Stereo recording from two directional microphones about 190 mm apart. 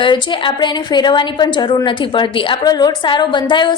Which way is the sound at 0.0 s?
25° left (ahead or behind).